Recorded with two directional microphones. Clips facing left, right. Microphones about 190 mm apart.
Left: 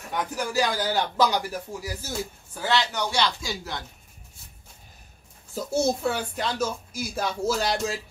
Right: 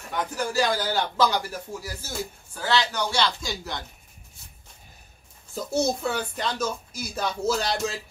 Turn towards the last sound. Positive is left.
turn(degrees=10)  # may be behind; listen again after turning